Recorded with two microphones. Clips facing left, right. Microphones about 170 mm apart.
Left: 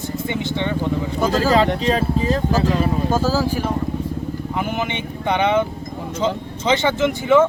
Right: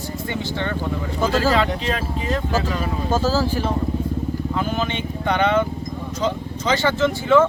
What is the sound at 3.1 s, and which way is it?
A man's voice, 10° left (ahead or behind).